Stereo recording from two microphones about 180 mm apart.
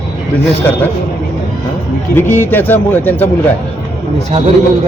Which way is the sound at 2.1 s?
10° left (ahead or behind).